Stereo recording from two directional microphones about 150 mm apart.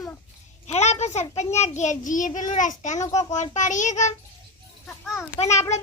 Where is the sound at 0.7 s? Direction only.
50° left (ahead or behind).